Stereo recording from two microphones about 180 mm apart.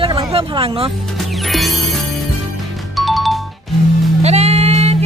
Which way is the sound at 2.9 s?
Centre (ahead or behind).